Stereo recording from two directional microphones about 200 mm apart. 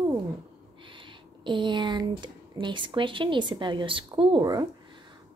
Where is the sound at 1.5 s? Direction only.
25° right (ahead or behind).